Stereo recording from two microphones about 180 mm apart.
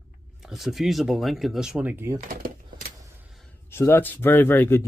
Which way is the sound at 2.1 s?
50° right (ahead or behind).